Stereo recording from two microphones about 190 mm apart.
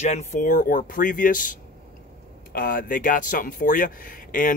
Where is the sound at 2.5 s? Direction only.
50° left (ahead or behind).